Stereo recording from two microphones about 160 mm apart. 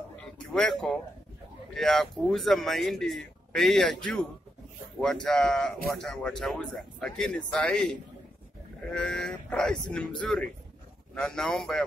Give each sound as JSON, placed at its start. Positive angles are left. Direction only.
{"t": 0.6, "sound": "speech", "side_deg": 5}